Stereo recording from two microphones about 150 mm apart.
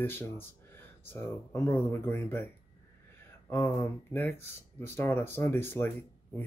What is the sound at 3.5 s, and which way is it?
Speech, 20° left (ahead or behind).